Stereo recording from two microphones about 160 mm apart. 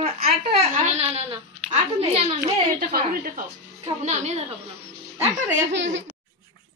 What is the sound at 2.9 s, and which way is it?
Speech, 60° right (ahead or behind).